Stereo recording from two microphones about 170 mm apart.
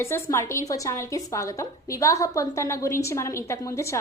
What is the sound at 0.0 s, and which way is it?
A woman's voice, 15° left (ahead or behind).